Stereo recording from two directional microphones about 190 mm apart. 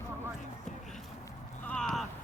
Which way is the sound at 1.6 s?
5° left (ahead or behind).